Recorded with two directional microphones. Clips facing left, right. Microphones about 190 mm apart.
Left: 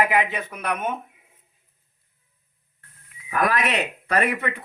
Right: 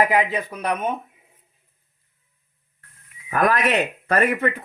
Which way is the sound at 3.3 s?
45° right (ahead or behind).